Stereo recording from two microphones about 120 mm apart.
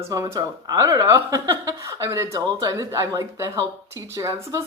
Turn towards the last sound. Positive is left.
turn(degrees=-25)  # may be behind; listen again after turning